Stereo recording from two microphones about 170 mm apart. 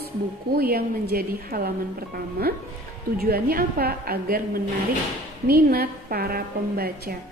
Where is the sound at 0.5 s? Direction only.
65° right (ahead or behind).